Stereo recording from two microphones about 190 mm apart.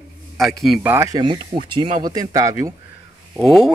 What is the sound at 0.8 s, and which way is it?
Speech, 15° right (ahead or behind).